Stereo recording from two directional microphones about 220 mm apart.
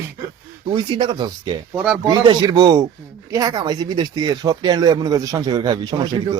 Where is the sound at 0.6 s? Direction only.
20° right (ahead or behind).